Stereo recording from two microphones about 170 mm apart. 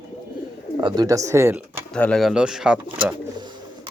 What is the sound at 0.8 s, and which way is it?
Speech, 20° right (ahead or behind).